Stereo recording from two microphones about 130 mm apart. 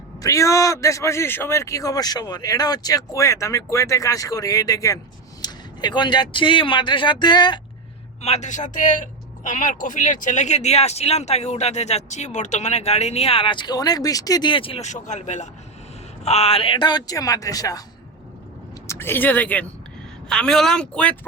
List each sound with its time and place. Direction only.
0.2 s speech: 25° left (ahead or behind)
8.2 s speech: 60° left (ahead or behind); by 14.8 s 45° left (ahead or behind)
14.8 s speech: 65° left (ahead or behind)
16.2 s speech: 50° left (ahead or behind); by 17.8 s 30° left (ahead or behind)
18.9 s speech: 15° left (ahead or behind)